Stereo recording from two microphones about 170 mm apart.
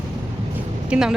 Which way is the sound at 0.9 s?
5° right (ahead or behind).